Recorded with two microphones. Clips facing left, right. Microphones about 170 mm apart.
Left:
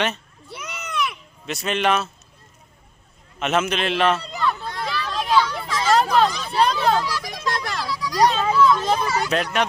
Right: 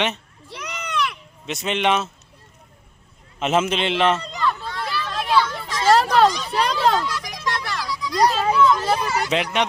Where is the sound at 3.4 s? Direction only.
25° right (ahead or behind).